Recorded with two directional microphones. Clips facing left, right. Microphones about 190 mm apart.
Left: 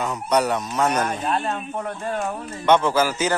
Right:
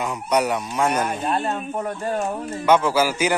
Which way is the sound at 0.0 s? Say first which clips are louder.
Even; 10° right (ahead or behind).